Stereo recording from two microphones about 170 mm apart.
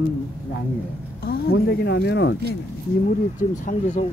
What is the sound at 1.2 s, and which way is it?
Speech, 65° left (ahead or behind).